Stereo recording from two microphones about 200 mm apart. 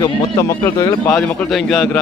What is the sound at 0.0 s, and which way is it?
Speech, 15° left (ahead or behind).